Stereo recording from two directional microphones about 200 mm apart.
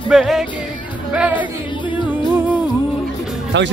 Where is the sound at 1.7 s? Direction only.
25° left (ahead or behind).